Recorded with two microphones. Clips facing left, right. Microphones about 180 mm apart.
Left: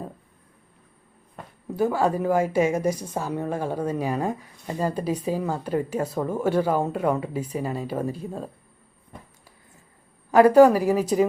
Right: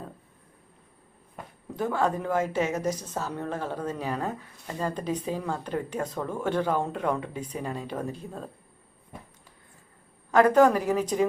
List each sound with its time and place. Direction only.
1.7 s a woman's voice: 10° left (ahead or behind)
10.3 s a woman's voice: 10° left (ahead or behind)